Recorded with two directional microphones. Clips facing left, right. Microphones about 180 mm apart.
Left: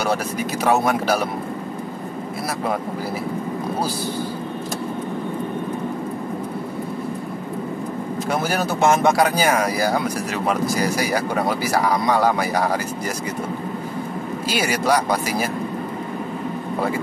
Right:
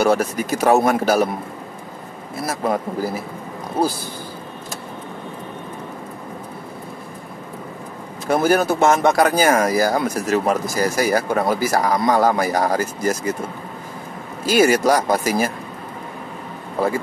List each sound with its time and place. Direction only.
0.0 s speech: 45° right (ahead or behind)
8.3 s speech: 50° right (ahead or behind)
14.4 s speech: 45° right (ahead or behind)